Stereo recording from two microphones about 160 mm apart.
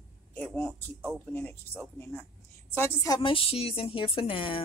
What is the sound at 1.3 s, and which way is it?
Speech, 10° left (ahead or behind).